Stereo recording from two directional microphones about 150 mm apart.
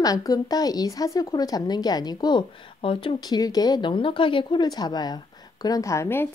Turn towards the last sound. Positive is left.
turn(degrees=15)  # may be behind; listen again after turning